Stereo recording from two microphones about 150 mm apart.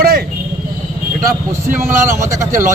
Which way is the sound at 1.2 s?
75° right (ahead or behind).